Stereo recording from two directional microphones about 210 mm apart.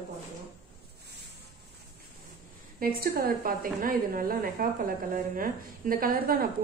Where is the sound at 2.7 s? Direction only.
45° right (ahead or behind).